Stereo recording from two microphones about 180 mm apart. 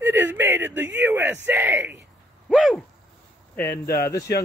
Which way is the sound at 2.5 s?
Centre (ahead or behind).